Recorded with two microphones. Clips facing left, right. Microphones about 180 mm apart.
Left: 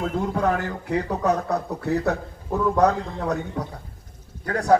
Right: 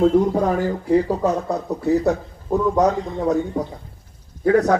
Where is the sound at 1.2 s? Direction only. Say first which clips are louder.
Right 2 dB; 60° left (ahead or behind).